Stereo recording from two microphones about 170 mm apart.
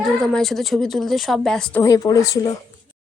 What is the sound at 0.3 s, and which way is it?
A woman's voice, centre (ahead or behind).